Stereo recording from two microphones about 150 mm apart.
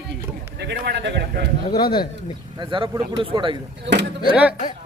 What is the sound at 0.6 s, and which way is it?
Speech, 90° right.